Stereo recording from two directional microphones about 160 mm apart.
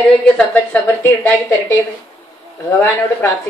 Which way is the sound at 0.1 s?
10° left (ahead or behind).